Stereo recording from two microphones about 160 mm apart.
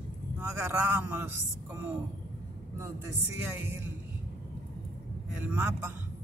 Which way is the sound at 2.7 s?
20° right (ahead or behind).